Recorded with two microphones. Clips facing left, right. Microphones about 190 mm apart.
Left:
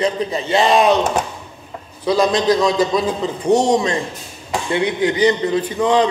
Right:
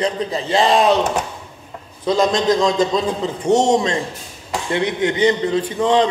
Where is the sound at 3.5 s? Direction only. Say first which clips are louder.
Even; 25° right (ahead or behind).